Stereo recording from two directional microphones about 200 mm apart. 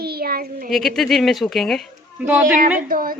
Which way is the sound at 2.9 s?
45° right (ahead or behind).